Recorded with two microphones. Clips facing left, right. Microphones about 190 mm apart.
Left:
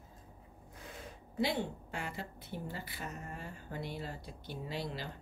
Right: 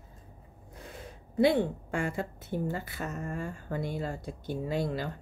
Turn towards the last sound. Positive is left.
turn(degrees=-50)  # may be behind; listen again after turning